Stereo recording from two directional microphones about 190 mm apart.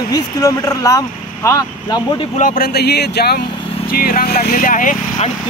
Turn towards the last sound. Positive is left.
turn(degrees=45)  # may be behind; listen again after turning